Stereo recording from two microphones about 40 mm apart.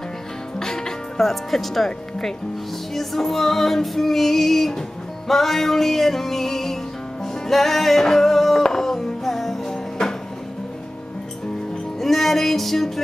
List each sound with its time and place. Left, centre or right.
0.6 s music: centre
1.9 s speech: centre
2.9 s music: centre
12.0 s music: centre